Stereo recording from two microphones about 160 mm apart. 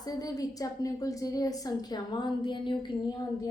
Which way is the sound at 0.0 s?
25° left (ahead or behind).